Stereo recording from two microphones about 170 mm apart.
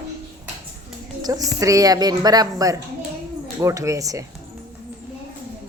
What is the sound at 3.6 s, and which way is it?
Speech, 20° right (ahead or behind).